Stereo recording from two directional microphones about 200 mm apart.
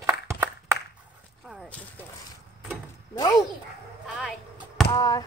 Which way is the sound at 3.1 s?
15° left (ahead or behind).